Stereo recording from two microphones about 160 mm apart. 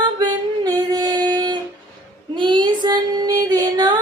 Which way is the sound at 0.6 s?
25° right (ahead or behind).